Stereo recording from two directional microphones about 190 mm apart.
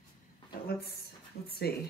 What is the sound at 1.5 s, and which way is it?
Speech, 55° left (ahead or behind).